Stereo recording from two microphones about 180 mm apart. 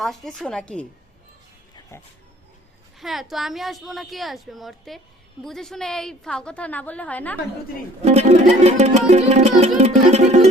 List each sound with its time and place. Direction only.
0.0 s a woman's voice: centre (ahead or behind)
3.0 s a woman's voice: centre (ahead or behind)
8.0 s music: 35° right (ahead or behind)